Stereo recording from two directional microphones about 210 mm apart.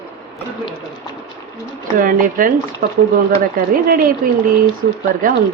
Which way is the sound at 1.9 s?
40° right (ahead or behind).